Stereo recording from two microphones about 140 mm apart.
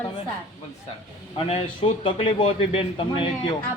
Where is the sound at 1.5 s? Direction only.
45° left (ahead or behind).